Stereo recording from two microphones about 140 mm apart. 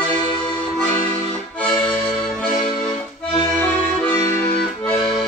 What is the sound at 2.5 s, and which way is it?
Music, 55° left (ahead or behind).